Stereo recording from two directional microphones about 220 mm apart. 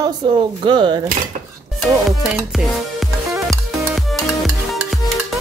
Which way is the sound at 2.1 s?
Centre (ahead or behind).